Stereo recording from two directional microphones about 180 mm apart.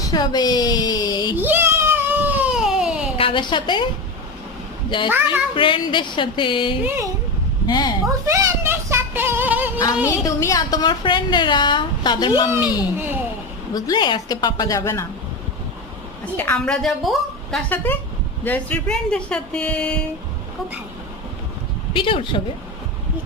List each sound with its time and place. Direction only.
0.0 s a woman's voice: 25° left (ahead or behind)
1.4 s baby cry: 10° right (ahead or behind)
3.2 s a woman's voice: 30° left (ahead or behind)
5.0 s a woman's voice: 10° right (ahead or behind)
5.5 s a woman's voice: 25° left (ahead or behind)
6.8 s a woman's voice: 15° right (ahead or behind)
7.7 s speech: 25° left (ahead or behind)
8.2 s child singing: 15° right (ahead or behind)
10.1 s a woman's voice: 15° left (ahead or behind)
13.0 s a woman's voice: 10° right (ahead or behind)
13.7 s a woman's voice: 20° left (ahead or behind)
16.4 s speech: 5° left (ahead or behind)
21.9 s a woman's voice: 30° left (ahead or behind)